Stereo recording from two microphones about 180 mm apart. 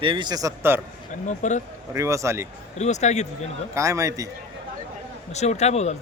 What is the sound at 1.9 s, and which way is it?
Speech, 15° right (ahead or behind).